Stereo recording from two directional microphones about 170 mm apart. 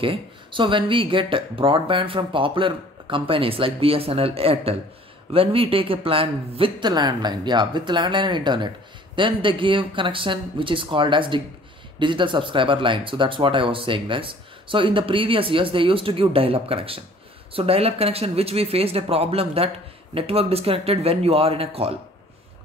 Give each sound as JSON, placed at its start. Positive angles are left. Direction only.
{"t": 0.0, "sound": "speech", "side_deg": -30}